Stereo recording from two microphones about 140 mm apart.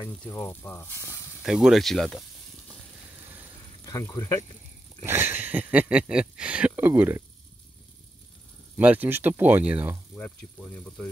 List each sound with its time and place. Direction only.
0.3 s speech: 20° left (ahead or behind)
1.4 s speech: centre (ahead or behind)
3.8 s speech: 25° left (ahead or behind)
5.0 s speech: 15° right (ahead or behind)
8.7 s speech: 10° right (ahead or behind)
10.1 s speech: 10° left (ahead or behind)